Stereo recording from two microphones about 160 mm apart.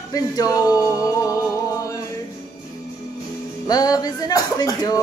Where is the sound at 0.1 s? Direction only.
20° left (ahead or behind).